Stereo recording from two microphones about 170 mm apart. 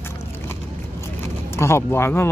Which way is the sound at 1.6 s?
15° left (ahead or behind).